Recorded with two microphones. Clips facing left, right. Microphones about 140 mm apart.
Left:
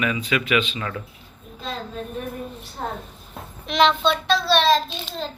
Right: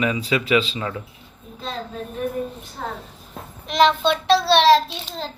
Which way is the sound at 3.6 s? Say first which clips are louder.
Right 2 dB; 40° right (ahead or behind).